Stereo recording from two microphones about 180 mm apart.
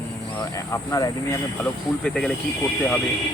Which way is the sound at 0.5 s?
20° left (ahead or behind).